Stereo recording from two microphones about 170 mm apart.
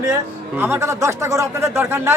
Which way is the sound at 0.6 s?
15° right (ahead or behind).